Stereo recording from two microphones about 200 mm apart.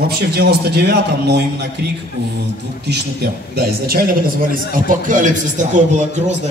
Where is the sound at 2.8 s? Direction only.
55° right (ahead or behind).